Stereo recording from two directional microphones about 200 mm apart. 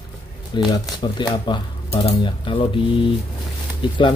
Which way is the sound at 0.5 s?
20° left (ahead or behind).